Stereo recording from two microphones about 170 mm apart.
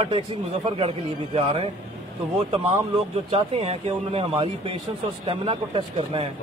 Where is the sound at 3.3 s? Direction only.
35° right (ahead or behind).